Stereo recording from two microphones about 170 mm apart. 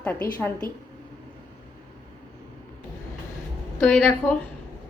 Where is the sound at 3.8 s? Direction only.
10° left (ahead or behind).